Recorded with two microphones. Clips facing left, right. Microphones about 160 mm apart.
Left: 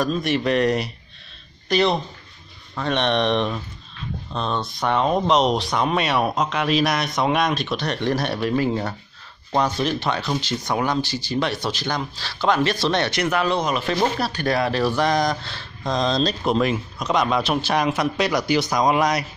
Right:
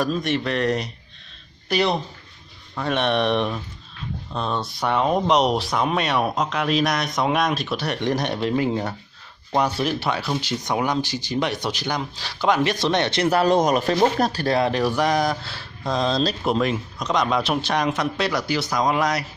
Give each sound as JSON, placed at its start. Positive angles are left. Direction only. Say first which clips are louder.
{"t": 0.2, "sound": "speech", "louder": "left 3 dB", "side_deg": 10}
{"t": 1.7, "sound": "speech", "louder": "left 2 dB", "side_deg": -10}
{"t": 14.4, "sound": "speech", "louder": "left 2 dB", "side_deg": -25}